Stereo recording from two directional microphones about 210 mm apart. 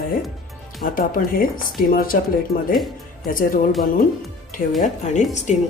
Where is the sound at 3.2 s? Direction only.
40° left (ahead or behind).